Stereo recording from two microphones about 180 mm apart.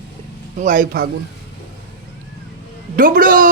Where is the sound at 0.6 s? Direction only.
45° right (ahead or behind).